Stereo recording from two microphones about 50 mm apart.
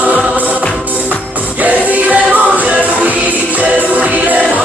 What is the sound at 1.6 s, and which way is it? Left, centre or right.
Music, right.